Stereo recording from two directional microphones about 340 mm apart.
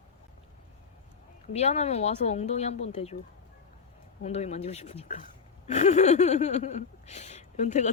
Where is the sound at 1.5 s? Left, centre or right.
Centre.